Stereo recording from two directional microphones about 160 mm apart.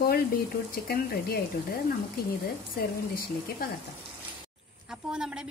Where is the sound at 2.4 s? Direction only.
70° left (ahead or behind).